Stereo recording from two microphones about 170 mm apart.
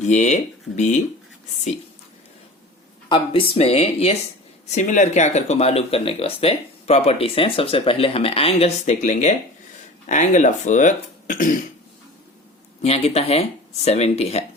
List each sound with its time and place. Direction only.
0.0 s speech: 45° left (ahead or behind)
3.1 s speech: 35° left (ahead or behind); by 11.5 s 50° left (ahead or behind)
12.8 s speech: 40° left (ahead or behind)